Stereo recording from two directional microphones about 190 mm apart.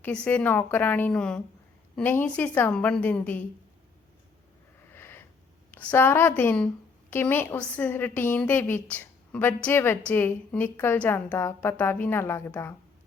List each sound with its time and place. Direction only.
0.0 s a woman's voice: 5° left (ahead or behind)
4.9 s a sound: 10° left (ahead or behind)
5.7 s a woman's voice: 10° left (ahead or behind)